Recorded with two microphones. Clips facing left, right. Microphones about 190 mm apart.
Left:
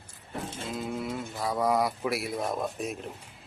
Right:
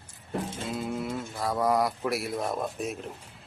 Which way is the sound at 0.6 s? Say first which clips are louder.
Right 1 dB; centre (ahead or behind).